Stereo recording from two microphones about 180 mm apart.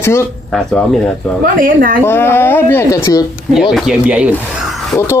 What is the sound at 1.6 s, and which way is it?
Speech, 50° right (ahead or behind).